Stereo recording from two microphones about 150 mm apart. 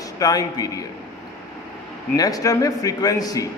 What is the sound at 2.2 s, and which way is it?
A man's voice, 25° left (ahead or behind).